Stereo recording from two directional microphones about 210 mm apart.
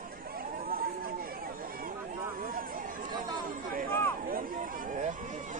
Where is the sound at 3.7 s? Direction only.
40° right (ahead or behind).